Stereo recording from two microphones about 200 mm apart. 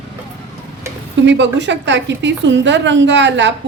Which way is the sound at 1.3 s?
60° right (ahead or behind).